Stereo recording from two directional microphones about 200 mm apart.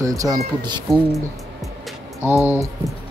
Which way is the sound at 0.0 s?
15° right (ahead or behind).